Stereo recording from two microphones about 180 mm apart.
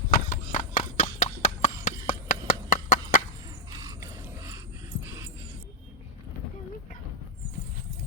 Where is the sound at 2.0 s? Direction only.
50° left (ahead or behind).